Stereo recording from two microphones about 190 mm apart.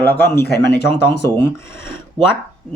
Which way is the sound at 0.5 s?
60° left (ahead or behind).